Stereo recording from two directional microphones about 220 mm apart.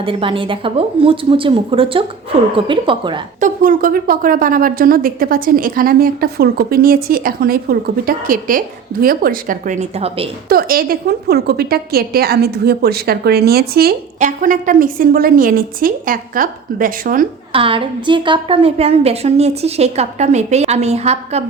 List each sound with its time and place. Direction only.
0.0 s a woman's voice: 25° right (ahead or behind)
3.4 s a woman's voice: 40° right (ahead or behind)
10.5 s a woman's voice: 40° right (ahead or behind)
17.5 s a woman's voice: 25° right (ahead or behind)